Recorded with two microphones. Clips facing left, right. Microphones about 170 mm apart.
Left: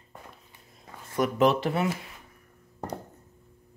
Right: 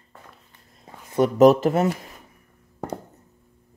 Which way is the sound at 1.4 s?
40° right (ahead or behind).